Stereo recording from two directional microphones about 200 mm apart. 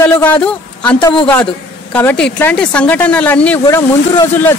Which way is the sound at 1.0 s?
25° left (ahead or behind).